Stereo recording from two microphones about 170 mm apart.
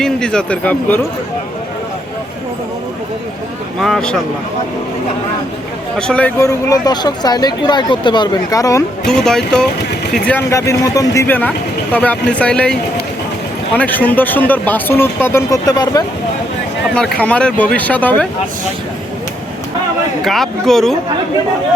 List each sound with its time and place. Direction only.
0.0 s speech: 5° left (ahead or behind)
3.8 s speech: centre (ahead or behind)
6.0 s speech: 5° left (ahead or behind)
6.4 s speech: 20° left (ahead or behind)
9.0 s speech: 5° left (ahead or behind)
10.5 s speech: 20° left (ahead or behind)
13.7 s speech: 10° left (ahead or behind)
16.9 s speech: 5° left (ahead or behind)
20.2 s speech: centre (ahead or behind)